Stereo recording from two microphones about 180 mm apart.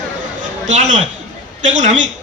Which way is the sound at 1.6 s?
40° right (ahead or behind).